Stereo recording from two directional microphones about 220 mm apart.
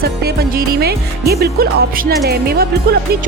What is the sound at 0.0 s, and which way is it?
Speech, 45° right (ahead or behind).